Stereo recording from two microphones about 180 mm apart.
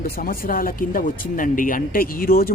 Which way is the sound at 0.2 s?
50° left (ahead or behind).